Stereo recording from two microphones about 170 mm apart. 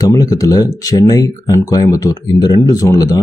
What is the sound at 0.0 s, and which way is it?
Speech, 20° left (ahead or behind).